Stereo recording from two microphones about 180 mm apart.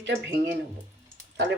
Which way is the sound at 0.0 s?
75° right (ahead or behind).